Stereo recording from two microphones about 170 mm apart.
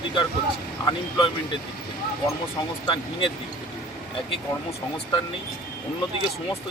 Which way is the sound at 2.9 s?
30° left (ahead or behind).